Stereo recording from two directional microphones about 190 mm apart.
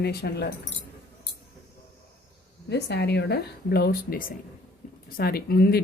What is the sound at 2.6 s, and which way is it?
Speech, 60° left (ahead or behind).